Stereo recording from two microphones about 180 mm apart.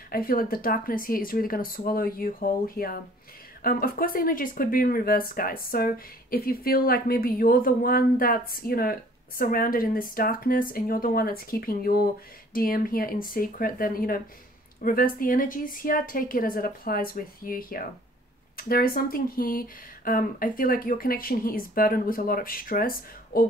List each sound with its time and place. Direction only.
0.1 s speech: 55° left (ahead or behind)